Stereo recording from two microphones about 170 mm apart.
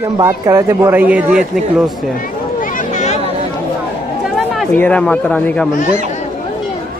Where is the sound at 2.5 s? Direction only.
50° left (ahead or behind).